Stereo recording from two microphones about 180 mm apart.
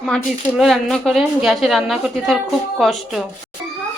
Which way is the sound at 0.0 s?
Centre (ahead or behind).